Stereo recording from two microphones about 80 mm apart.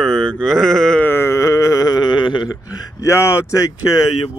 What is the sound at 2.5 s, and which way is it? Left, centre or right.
Speech, left.